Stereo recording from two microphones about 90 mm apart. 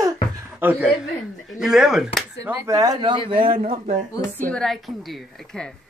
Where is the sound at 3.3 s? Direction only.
75° right (ahead or behind).